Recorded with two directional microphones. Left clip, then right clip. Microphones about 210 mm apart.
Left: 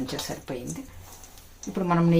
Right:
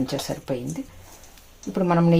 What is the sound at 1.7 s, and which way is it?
Speech, 50° right (ahead or behind).